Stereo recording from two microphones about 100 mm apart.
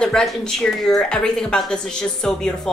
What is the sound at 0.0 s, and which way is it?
A woman's voice, 5° left (ahead or behind).